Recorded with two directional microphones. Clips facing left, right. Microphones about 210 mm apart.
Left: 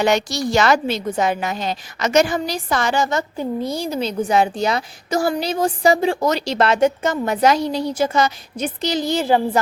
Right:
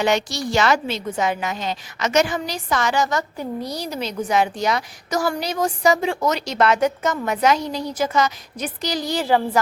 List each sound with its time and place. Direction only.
0.0 s a woman's voice: 40° left (ahead or behind); by 9.6 s 25° left (ahead or behind)